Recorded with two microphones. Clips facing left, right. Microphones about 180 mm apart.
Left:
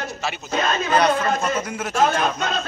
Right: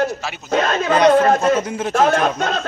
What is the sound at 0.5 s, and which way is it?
A man's voice, 60° right (ahead or behind).